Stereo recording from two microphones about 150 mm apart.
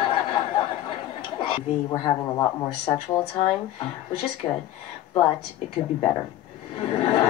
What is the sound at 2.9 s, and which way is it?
Speech, 35° left (ahead or behind).